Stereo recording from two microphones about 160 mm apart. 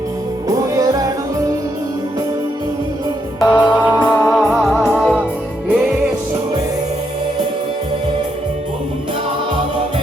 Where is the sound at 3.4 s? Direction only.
10° left (ahead or behind).